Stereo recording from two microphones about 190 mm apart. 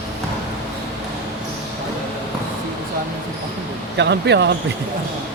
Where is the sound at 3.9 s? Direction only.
65° right (ahead or behind).